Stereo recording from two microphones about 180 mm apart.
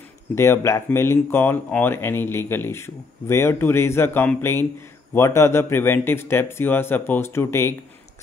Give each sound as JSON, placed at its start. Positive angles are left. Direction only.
{"t": 0.3, "sound": "speech", "side_deg": 15}